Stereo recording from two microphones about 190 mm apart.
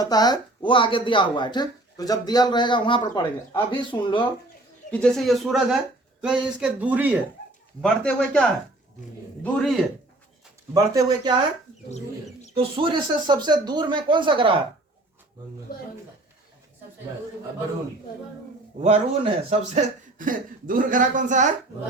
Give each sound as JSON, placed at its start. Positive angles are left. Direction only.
{"t": 0.0, "sound": "speech", "side_deg": 20}
{"t": 4.9, "sound": "speech", "side_deg": 5}
{"t": 7.8, "sound": "speech", "side_deg": 5}
{"t": 10.8, "sound": "speech", "side_deg": -20}
{"t": 11.9, "sound": "speech", "side_deg": 35}
{"t": 12.5, "sound": "speech", "side_deg": -30}
{"t": 18.8, "sound": "a man's voice", "side_deg": -30}
{"t": 20.1, "sound": "speech", "side_deg": -45}